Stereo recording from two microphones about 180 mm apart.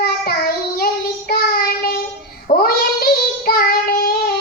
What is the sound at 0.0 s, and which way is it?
Child singing, 60° left (ahead or behind).